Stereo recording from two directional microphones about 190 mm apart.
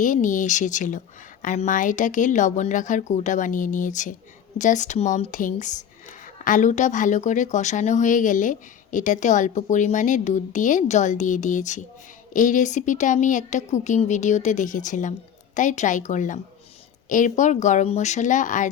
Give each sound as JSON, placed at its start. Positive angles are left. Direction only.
{"t": 0.0, "sound": "speech", "side_deg": 40}